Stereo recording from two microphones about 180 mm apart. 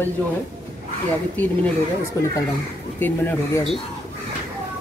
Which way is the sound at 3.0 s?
10° left (ahead or behind).